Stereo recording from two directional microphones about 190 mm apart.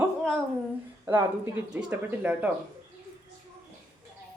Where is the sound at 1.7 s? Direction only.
10° right (ahead or behind).